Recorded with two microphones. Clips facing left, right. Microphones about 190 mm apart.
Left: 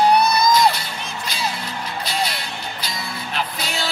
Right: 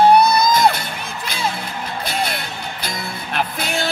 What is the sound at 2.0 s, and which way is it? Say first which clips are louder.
Music: right 2 dB; 50° right (ahead or behind).